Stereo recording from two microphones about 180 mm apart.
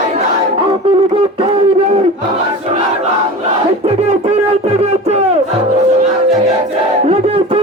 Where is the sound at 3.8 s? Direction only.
35° right (ahead or behind).